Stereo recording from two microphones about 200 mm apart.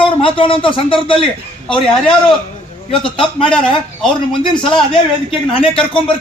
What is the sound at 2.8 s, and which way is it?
Speech, 25° left (ahead or behind).